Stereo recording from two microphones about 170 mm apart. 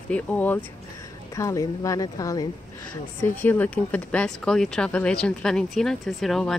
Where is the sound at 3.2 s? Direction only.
10° left (ahead or behind).